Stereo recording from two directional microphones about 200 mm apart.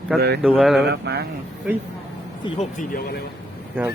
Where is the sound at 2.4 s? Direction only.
35° left (ahead or behind).